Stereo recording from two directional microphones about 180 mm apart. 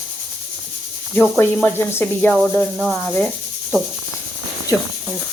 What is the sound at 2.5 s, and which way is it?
Rub, centre (ahead or behind).